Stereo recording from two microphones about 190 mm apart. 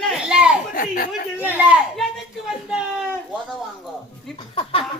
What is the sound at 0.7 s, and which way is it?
Speech, 50° left (ahead or behind).